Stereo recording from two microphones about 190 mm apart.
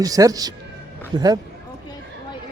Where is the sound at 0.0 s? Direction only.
20° right (ahead or behind).